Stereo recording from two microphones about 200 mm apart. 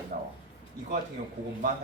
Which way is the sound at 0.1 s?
40° right (ahead or behind).